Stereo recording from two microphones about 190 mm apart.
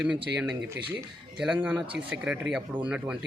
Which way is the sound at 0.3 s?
10° right (ahead or behind).